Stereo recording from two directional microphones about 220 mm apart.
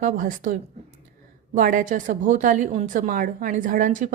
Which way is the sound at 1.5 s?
40° right (ahead or behind).